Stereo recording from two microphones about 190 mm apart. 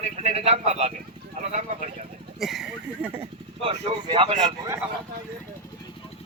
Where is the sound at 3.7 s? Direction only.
30° right (ahead or behind).